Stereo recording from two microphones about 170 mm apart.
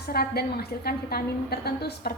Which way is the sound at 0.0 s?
65° left (ahead or behind).